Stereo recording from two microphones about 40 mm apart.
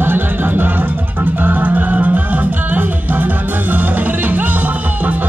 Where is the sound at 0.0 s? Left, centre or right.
Right.